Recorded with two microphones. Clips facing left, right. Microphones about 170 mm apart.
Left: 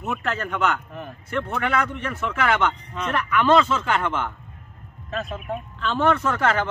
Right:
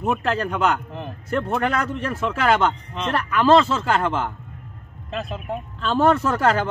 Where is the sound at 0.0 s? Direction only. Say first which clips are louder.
Right 5 dB; 35° right (ahead or behind).